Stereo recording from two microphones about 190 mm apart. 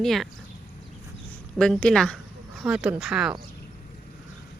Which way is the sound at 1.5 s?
5° left (ahead or behind).